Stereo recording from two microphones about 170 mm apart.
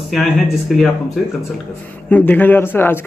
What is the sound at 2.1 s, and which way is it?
Speech, 10° left (ahead or behind).